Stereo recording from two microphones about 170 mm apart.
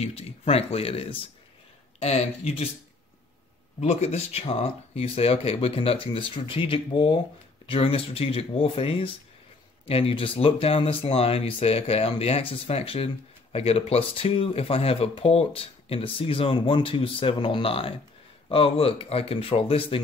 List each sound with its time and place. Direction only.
0.0 s speech: 35° left (ahead or behind)
3.8 s speech: 40° left (ahead or behind)